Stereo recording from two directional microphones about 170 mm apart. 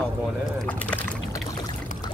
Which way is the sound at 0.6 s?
10° left (ahead or behind).